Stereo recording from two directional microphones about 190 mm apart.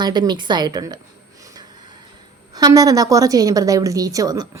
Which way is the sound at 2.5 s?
20° right (ahead or behind).